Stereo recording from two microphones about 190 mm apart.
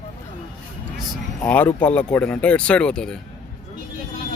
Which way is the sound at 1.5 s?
10° left (ahead or behind).